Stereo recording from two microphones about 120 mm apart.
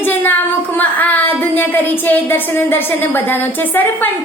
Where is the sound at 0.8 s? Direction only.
15° left (ahead or behind).